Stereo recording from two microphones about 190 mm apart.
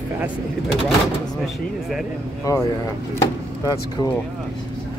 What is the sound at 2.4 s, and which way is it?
Speech, 15° left (ahead or behind).